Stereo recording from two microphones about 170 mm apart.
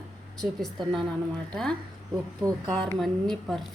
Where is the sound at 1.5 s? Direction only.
5° left (ahead or behind).